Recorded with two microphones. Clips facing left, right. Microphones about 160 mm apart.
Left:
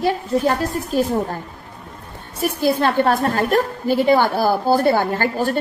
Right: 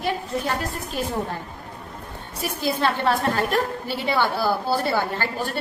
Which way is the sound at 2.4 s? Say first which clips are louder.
Left 6 dB; 50° left (ahead or behind).